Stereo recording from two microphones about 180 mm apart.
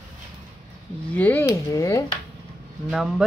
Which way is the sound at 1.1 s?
10° left (ahead or behind).